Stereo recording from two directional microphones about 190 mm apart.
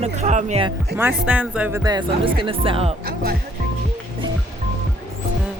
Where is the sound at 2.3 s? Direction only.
25° right (ahead or behind).